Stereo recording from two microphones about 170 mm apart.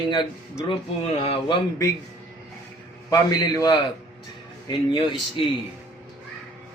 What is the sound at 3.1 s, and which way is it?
Speech, 25° left (ahead or behind).